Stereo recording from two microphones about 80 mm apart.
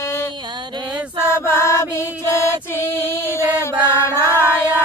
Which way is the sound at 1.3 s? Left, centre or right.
Left.